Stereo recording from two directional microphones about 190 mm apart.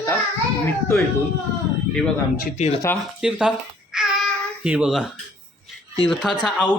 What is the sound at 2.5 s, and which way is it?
Speech, 35° left (ahead or behind).